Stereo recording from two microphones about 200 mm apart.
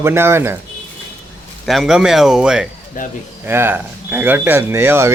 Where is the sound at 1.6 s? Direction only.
Centre (ahead or behind).